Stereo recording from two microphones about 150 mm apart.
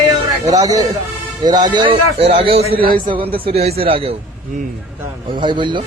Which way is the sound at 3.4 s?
40° right (ahead or behind).